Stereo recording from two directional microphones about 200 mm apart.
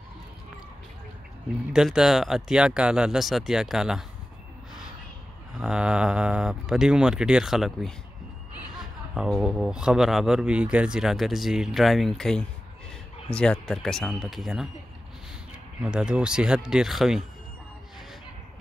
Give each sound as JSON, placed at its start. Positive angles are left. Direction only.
{"t": 1.7, "sound": "speech", "side_deg": -5}
{"t": 5.6, "sound": "speech", "side_deg": -5}
{"t": 9.1, "sound": "speech", "side_deg": -5}
{"t": 15.8, "sound": "speech", "side_deg": -5}